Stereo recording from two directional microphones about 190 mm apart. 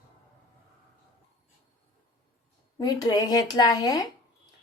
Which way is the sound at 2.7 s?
20° left (ahead or behind).